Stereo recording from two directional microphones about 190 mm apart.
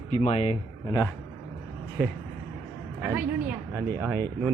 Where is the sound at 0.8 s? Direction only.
20° left (ahead or behind).